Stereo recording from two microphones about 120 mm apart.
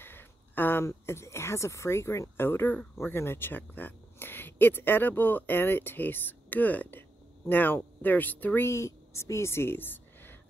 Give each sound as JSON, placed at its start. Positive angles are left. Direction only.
{"t": 0.0, "sound": "speech", "side_deg": 15}